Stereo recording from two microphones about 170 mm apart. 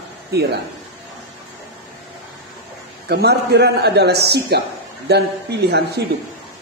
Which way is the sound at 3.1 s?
75° right (ahead or behind).